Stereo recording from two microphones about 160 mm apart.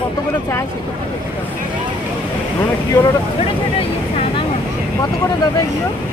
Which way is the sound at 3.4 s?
35° left (ahead or behind).